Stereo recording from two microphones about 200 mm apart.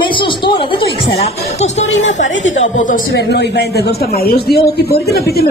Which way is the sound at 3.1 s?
55° left (ahead or behind).